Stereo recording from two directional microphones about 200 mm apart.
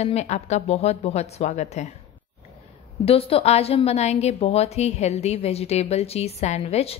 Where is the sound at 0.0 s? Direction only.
35° left (ahead or behind).